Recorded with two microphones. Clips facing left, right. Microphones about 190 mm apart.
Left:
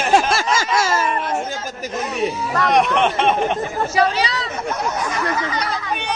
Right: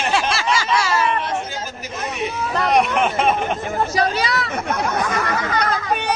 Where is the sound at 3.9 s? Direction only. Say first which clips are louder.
Left 4 dB; 45° right (ahead or behind).